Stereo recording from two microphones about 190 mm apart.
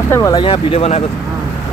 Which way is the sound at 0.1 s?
20° left (ahead or behind).